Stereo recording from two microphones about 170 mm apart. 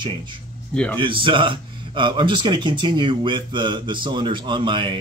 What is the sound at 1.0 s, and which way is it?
Speech, 30° right (ahead or behind).